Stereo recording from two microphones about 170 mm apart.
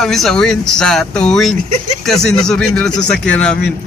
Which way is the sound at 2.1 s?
5° left (ahead or behind).